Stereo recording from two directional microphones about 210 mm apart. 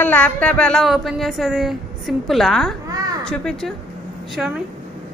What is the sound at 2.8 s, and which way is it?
Babbling, 15° right (ahead or behind).